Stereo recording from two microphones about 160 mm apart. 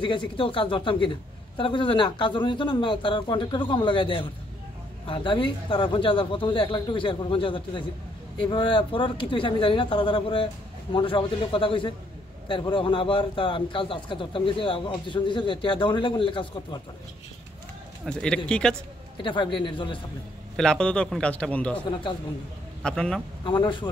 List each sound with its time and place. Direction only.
0.0 s speech: 30° left (ahead or behind)
18.0 s speech: 5° left (ahead or behind)
19.1 s speech: 30° left (ahead or behind)
20.5 s a man's voice: 5° left (ahead or behind)
23.4 s speech: 30° left (ahead or behind)